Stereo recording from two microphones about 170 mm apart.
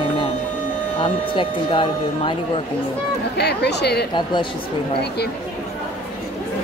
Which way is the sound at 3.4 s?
75° left (ahead or behind).